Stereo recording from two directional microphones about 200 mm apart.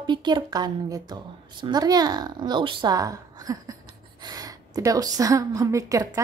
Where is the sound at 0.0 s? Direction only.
25° right (ahead or behind).